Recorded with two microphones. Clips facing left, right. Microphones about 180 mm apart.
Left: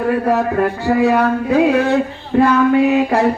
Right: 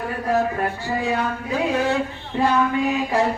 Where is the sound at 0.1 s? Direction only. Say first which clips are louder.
Left 4 dB; 65° left (ahead or behind).